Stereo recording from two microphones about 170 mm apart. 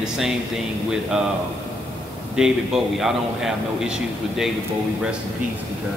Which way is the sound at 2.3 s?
5° right (ahead or behind).